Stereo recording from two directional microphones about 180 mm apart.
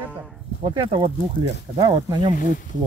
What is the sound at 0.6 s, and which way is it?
Speech, 30° right (ahead or behind).